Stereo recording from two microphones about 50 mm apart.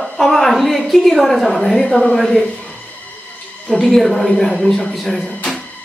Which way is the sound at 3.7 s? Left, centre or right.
Centre.